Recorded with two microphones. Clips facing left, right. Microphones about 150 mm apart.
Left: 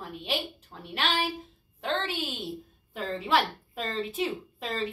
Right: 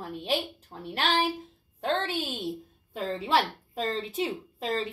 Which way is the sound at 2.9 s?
35° right (ahead or behind).